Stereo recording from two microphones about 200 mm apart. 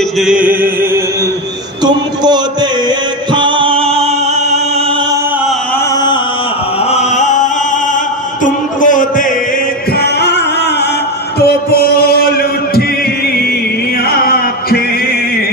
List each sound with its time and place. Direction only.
0.2 s music: 5° right (ahead or behind)
1.9 s speech: 20° right (ahead or behind)
3.3 s music: 25° right (ahead or behind)
6.9 s chant: 35° left (ahead or behind)
8.5 s a sound: 40° left (ahead or behind)
11.3 s music: 50° left (ahead or behind)
14.2 s a sound: 50° left (ahead or behind)